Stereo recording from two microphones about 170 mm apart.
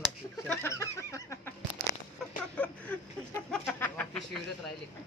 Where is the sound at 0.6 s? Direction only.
15° left (ahead or behind).